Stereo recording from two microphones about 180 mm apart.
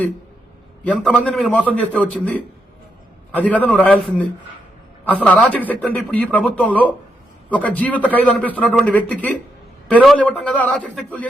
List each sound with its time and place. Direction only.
0.9 s a man's voice: 5° left (ahead or behind)